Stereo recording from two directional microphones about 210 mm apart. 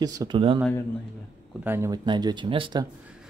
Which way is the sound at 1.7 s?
15° right (ahead or behind).